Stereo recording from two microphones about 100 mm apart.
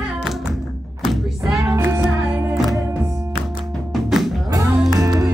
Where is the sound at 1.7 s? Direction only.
30° right (ahead or behind).